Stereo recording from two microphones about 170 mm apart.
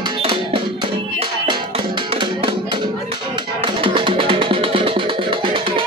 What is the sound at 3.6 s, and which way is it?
Music, 30° right (ahead or behind).